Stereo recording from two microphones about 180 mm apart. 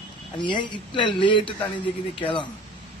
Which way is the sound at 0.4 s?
25° left (ahead or behind).